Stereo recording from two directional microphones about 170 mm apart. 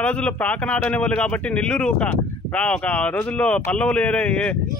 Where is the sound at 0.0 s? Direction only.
5° left (ahead or behind).